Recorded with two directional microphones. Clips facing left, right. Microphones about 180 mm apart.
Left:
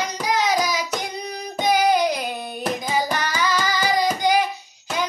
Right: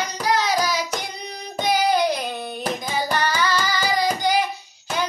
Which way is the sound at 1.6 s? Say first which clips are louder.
Left 1 dB; 15° left (ahead or behind).